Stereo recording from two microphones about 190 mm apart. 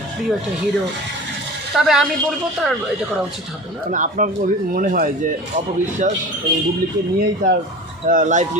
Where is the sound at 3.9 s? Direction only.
40° right (ahead or behind).